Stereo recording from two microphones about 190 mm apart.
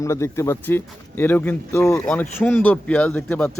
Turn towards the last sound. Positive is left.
turn(degrees=10)  # may be behind; listen again after turning